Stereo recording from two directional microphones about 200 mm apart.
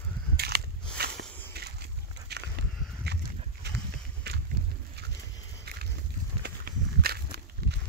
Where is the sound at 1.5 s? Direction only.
55° right (ahead or behind).